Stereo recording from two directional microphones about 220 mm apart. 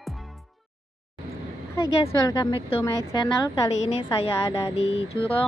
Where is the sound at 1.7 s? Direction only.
15° left (ahead or behind).